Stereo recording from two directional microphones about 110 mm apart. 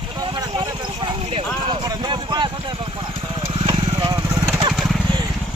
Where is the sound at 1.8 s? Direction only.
40° right (ahead or behind).